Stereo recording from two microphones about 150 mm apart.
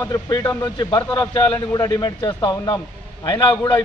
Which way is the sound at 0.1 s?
25° left (ahead or behind).